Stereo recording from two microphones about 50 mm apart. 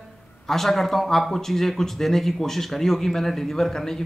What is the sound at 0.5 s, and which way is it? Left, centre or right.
Speech, centre.